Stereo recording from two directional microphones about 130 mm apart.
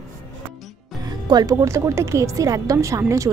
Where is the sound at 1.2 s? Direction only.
30° right (ahead or behind).